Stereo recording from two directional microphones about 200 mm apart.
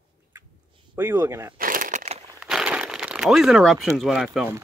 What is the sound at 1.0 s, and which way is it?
Speech, 10° right (ahead or behind).